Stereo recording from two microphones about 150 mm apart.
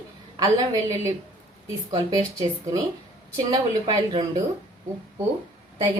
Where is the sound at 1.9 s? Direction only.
25° right (ahead or behind).